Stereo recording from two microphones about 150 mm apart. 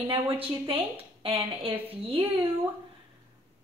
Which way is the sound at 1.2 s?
40° right (ahead or behind).